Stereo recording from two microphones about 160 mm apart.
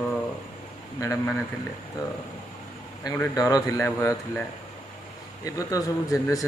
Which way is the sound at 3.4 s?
25° left (ahead or behind).